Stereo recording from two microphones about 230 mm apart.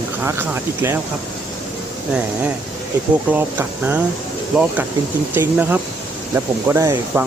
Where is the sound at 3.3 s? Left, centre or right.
Centre.